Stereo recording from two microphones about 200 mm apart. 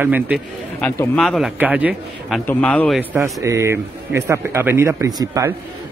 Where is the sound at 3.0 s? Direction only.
15° right (ahead or behind).